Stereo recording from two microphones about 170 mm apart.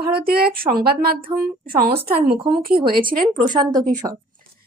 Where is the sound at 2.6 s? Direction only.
60° right (ahead or behind).